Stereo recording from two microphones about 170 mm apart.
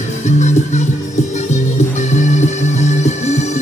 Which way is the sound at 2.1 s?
45° left (ahead or behind).